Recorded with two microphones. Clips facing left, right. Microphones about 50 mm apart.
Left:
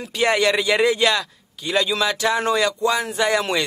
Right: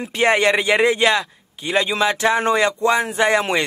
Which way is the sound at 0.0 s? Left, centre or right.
Right.